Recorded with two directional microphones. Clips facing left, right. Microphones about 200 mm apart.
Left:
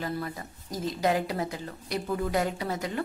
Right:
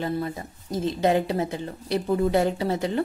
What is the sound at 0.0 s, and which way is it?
Speech, 25° right (ahead or behind).